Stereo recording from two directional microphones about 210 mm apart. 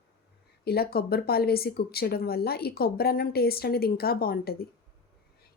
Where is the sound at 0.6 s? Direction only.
45° left (ahead or behind).